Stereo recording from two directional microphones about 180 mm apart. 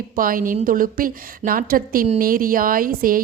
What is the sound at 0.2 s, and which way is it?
Speech, 50° right (ahead or behind).